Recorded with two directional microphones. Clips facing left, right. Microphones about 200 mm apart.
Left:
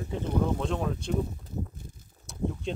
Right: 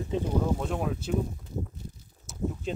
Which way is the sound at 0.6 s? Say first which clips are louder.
Even; 5° right (ahead or behind).